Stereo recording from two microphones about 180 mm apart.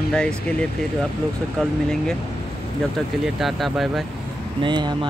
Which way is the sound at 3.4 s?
Centre (ahead or behind).